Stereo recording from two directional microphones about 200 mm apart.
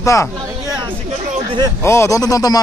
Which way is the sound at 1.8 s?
15° left (ahead or behind).